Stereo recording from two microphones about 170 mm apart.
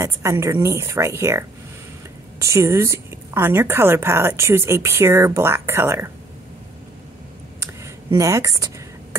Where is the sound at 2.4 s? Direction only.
15° right (ahead or behind).